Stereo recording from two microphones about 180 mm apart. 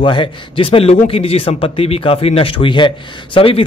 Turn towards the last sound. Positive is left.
turn(degrees=30)  # may be behind; listen again after turning